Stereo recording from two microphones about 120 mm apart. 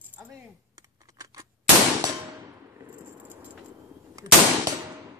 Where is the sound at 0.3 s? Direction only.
30° right (ahead or behind).